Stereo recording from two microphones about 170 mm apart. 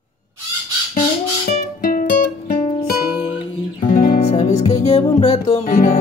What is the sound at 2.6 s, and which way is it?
Music, 35° left (ahead or behind).